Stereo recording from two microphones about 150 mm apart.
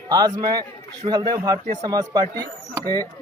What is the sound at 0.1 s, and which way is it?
Speech, 25° right (ahead or behind).